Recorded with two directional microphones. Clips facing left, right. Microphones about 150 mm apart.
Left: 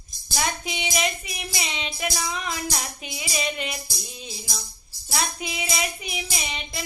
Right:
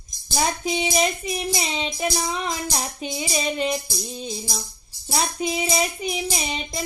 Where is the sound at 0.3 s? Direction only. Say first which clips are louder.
Right 5 dB; 35° right (ahead or behind).